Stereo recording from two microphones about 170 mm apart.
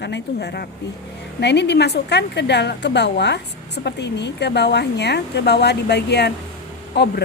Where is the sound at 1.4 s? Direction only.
90° left.